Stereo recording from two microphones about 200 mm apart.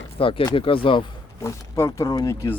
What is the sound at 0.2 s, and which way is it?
Speech, 25° left (ahead or behind).